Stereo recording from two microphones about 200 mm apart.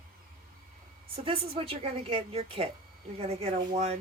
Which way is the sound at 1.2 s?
25° right (ahead or behind).